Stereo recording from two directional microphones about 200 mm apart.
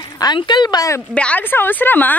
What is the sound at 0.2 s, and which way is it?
A woman's voice, 20° left (ahead or behind).